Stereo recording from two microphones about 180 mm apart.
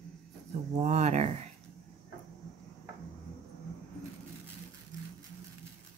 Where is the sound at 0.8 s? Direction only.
40° right (ahead or behind).